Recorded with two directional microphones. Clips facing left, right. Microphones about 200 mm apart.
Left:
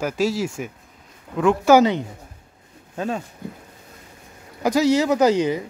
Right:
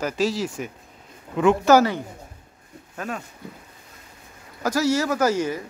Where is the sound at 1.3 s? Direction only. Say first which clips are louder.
Even; centre (ahead or behind).